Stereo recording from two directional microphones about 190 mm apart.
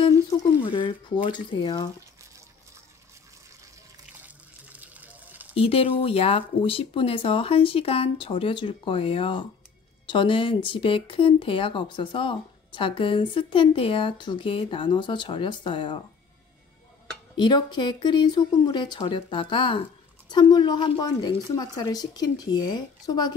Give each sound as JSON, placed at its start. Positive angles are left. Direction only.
{"t": 0.6, "sound": "speech", "side_deg": 25}
{"t": 4.7, "sound": "water", "side_deg": -10}
{"t": 5.5, "sound": "speech", "side_deg": 30}
{"t": 17.4, "sound": "speech", "side_deg": 25}